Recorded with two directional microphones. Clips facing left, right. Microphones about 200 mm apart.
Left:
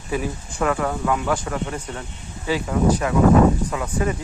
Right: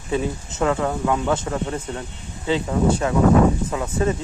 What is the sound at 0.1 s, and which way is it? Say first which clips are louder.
Speech: right 2 dB; 25° right (ahead or behind).